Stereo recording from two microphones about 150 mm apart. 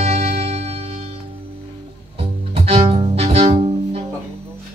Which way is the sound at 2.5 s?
40° right (ahead or behind).